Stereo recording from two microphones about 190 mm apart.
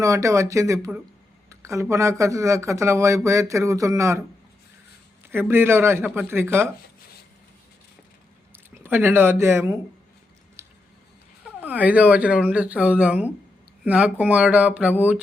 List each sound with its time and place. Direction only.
0.0 s speech: 15° right (ahead or behind)
5.3 s speech: 10° right (ahead or behind)
8.5 s speech: 10° right (ahead or behind)
10.6 s squish: 15° right (ahead or behind)
11.4 s speech: 10° right (ahead or behind)